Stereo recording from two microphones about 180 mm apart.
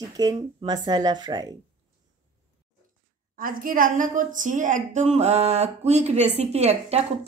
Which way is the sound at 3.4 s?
50° right (ahead or behind).